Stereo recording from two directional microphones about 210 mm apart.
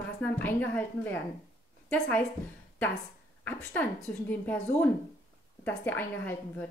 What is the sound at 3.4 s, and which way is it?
A woman's voice, 10° left (ahead or behind).